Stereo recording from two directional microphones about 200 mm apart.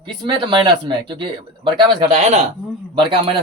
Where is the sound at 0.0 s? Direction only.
25° right (ahead or behind).